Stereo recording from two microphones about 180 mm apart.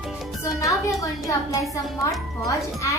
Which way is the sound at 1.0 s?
15° left (ahead or behind).